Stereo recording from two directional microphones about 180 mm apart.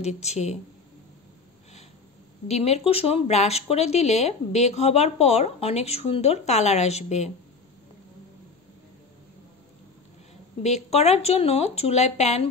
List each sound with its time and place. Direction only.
0.0 s speech: 35° left (ahead or behind)
2.4 s speech: 35° left (ahead or behind)
10.6 s speech: 35° left (ahead or behind)